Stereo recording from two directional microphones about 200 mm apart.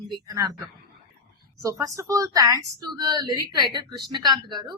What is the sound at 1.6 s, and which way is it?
Speech, 15° right (ahead or behind).